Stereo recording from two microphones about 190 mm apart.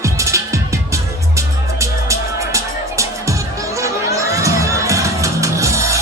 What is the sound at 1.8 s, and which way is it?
Music, 15° right (ahead or behind).